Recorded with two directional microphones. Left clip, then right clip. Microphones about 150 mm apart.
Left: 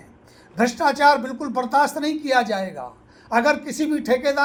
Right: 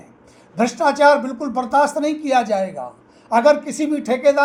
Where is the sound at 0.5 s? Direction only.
20° left (ahead or behind).